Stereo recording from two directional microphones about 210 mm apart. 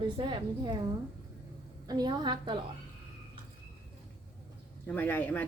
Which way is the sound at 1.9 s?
20° right (ahead or behind).